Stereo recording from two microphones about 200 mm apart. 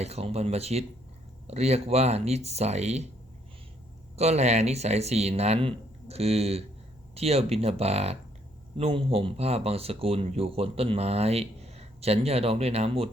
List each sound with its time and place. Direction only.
0.0 s speech: 30° right (ahead or behind)
4.2 s speech: 35° right (ahead or behind)